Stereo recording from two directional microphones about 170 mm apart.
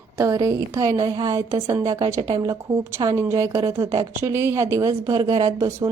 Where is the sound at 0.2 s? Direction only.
20° right (ahead or behind).